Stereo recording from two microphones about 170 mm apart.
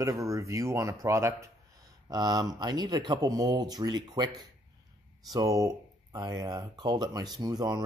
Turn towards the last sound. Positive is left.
turn(degrees=-25)  # may be behind; listen again after turning